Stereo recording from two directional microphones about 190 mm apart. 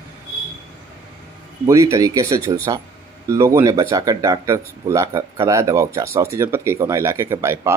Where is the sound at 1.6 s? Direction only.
15° right (ahead or behind).